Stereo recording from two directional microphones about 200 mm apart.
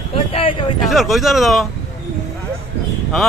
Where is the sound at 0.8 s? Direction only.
Centre (ahead or behind).